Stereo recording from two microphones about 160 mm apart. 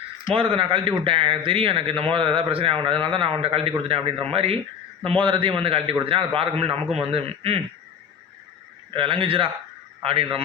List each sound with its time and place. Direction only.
0.3 s speech: 35° right (ahead or behind)
8.9 s a man's voice: 35° right (ahead or behind)